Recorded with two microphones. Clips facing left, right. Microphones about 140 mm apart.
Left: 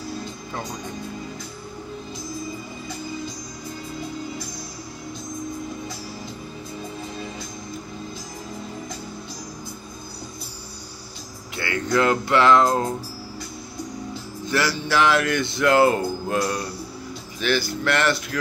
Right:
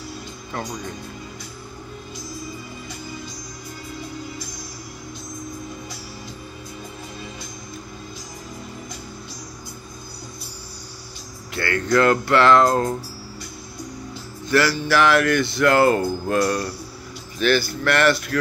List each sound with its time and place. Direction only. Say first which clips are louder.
11.6 s a sound: right 4 dB; 20° left (ahead or behind)
11.9 s speech: right 2 dB; 20° left (ahead or behind)
14.4 s speech: right 4 dB; 20° left (ahead or behind)